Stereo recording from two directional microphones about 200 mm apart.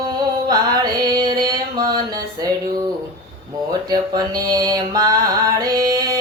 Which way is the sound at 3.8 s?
20° right (ahead or behind).